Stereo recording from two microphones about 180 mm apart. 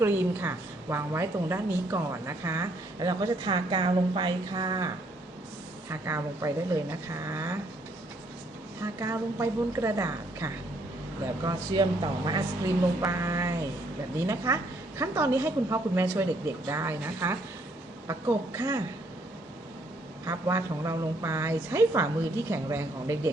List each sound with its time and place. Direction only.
0.0 s a woman's voice: 15° right (ahead or behind)
5.9 s a woman's voice: 15° right (ahead or behind)
8.8 s a woman's voice: 15° right (ahead or behind)
20.2 s a woman's voice: 15° right (ahead or behind)